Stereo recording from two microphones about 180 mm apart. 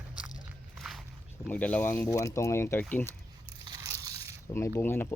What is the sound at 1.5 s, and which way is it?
Speech, 10° left (ahead or behind).